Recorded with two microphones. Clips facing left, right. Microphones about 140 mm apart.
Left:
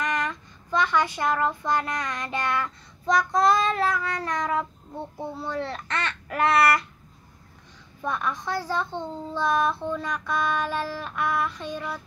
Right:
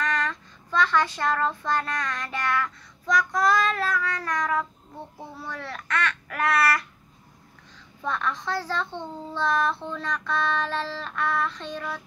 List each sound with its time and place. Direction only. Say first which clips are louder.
0.0 s child singing: even; 15° left (ahead or behind)
5.4 s a child's voice: left 5 dB; 25° left (ahead or behind)
8.0 s a child's voice: even; 10° left (ahead or behind)